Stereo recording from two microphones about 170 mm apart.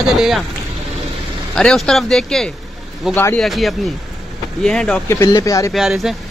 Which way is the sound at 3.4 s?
Centre (ahead or behind).